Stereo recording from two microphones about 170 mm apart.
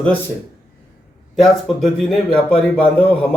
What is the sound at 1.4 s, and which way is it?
A man's voice, centre (ahead or behind).